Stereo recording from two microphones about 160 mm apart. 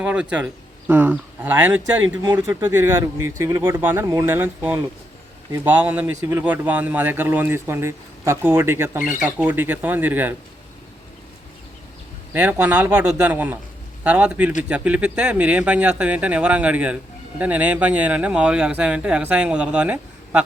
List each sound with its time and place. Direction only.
0.0 s speech: 10° right (ahead or behind)
12.3 s speech: 10° right (ahead or behind)